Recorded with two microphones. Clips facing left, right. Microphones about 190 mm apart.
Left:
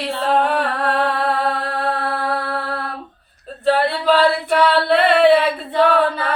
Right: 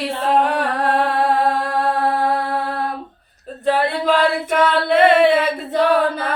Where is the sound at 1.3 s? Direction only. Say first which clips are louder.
Right 3 dB; 45° right (ahead or behind).